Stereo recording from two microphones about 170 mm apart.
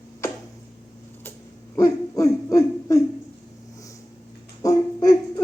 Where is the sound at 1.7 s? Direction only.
20° left (ahead or behind).